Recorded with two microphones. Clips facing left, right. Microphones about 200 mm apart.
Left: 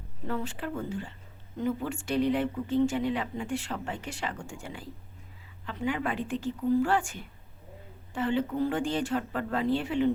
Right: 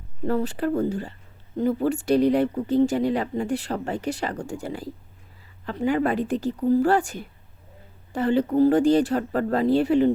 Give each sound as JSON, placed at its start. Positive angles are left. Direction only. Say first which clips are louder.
{"t": 0.3, "sound": "speech", "louder": "right 10 dB", "side_deg": -40}